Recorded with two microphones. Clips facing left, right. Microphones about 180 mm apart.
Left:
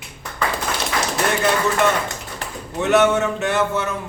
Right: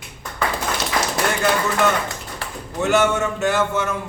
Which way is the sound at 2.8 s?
Centre (ahead or behind).